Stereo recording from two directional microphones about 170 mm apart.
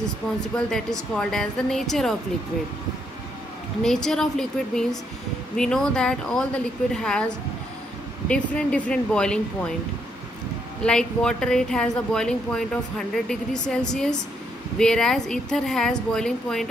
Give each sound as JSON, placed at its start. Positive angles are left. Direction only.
{"t": 0.6, "sound": "speech", "side_deg": 5}
{"t": 3.8, "sound": "speech", "side_deg": 5}
{"t": 10.8, "sound": "speech", "side_deg": 5}